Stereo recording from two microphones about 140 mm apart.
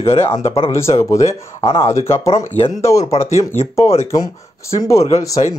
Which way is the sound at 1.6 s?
40° left (ahead or behind).